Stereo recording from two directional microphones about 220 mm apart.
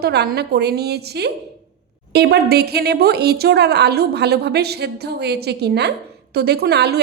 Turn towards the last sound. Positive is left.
turn(degrees=-50)  # may be behind; listen again after turning